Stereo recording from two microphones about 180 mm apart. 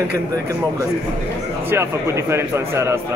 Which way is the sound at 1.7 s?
15° right (ahead or behind).